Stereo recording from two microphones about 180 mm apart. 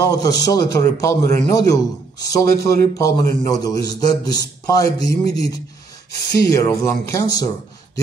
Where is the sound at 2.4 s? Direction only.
55° right (ahead or behind).